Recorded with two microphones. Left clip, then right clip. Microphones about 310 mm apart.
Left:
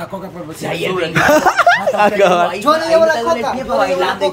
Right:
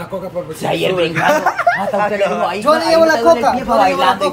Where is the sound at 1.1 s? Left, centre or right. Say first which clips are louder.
Left 3 dB; centre.